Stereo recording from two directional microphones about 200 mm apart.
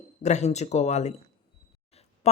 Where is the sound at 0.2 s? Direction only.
35° left (ahead or behind).